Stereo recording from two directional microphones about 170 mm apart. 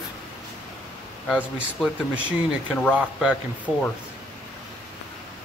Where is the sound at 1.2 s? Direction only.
5° right (ahead or behind).